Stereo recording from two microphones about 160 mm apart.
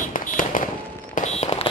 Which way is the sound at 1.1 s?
45° left (ahead or behind).